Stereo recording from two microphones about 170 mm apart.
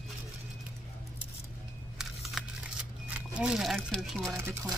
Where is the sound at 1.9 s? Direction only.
5° right (ahead or behind).